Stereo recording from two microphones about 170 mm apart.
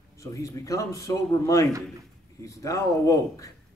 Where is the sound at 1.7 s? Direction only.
20° right (ahead or behind).